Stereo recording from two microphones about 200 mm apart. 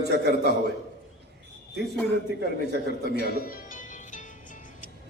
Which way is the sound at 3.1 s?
50° left (ahead or behind).